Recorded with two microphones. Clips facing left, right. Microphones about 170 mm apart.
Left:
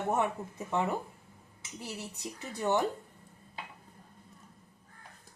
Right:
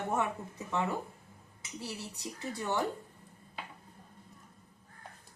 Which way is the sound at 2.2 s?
20° left (ahead or behind).